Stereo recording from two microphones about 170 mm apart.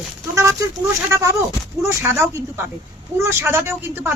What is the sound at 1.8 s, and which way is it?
Speech, 15° right (ahead or behind).